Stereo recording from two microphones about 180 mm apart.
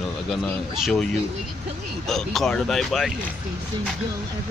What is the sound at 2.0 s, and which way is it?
Speech, centre (ahead or behind).